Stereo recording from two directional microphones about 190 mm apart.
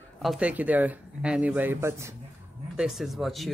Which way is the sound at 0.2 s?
5° right (ahead or behind).